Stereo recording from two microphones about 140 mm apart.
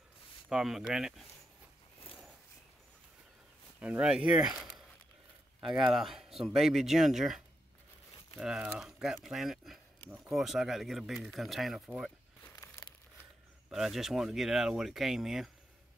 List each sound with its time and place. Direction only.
0.5 s speech: 5° right (ahead or behind)
3.8 s speech: 5° right (ahead or behind)
10.0 s speech: 15° right (ahead or behind)
10.3 s speech: centre (ahead or behind)
12.5 s crumpling: 20° left (ahead or behind)
13.7 s speech: centre (ahead or behind)